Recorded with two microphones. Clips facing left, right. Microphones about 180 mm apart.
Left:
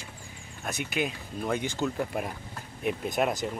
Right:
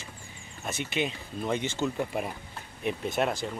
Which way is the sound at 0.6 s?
5° left (ahead or behind).